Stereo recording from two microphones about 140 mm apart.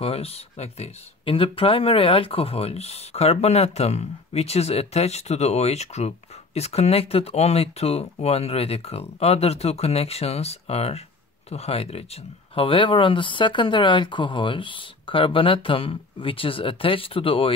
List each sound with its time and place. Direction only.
0.0 s speech: 45° left (ahead or behind)